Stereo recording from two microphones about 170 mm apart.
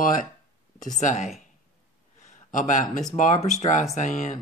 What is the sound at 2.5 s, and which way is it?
Speech, 50° left (ahead or behind).